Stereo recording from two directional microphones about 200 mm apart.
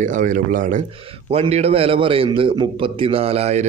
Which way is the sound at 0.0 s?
40° right (ahead or behind).